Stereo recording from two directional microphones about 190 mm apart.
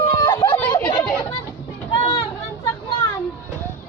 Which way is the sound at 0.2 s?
15° left (ahead or behind).